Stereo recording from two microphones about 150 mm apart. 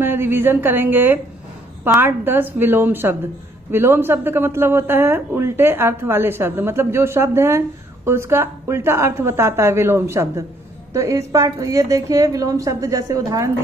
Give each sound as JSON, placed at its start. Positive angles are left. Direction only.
{"t": 0.0, "sound": "a woman's voice", "side_deg": -15}